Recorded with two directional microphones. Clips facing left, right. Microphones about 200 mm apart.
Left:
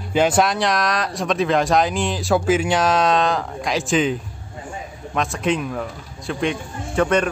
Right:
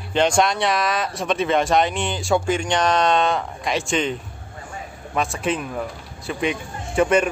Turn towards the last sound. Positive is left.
turn(degrees=-5)  # may be behind; listen again after turning